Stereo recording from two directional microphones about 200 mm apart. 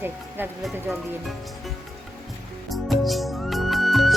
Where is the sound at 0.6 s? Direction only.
Centre (ahead or behind).